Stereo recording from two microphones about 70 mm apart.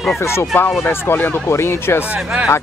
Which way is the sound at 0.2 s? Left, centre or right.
Left.